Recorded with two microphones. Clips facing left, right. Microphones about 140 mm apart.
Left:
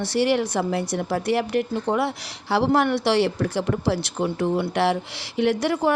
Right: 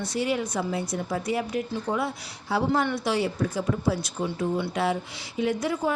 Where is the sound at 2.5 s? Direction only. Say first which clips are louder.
Left 5 dB; 75° left (ahead or behind).